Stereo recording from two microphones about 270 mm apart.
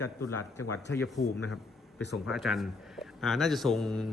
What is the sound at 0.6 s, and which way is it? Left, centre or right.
Speech, left.